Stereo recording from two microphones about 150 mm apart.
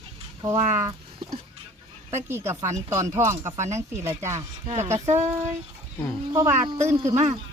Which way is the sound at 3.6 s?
50° right (ahead or behind).